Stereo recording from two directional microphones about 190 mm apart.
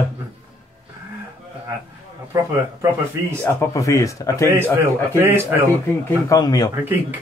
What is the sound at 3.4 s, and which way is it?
Speech, 15° left (ahead or behind).